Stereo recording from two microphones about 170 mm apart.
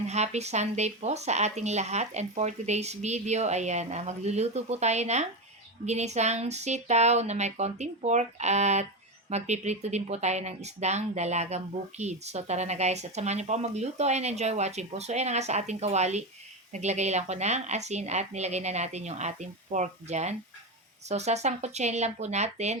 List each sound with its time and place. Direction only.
0.1 s speech: 40° right (ahead or behind)